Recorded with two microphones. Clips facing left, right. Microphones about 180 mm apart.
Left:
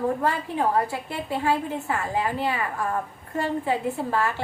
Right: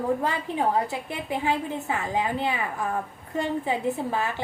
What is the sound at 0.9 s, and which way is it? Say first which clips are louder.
A woman's voice: left 1 dB; 15° right (ahead or behind).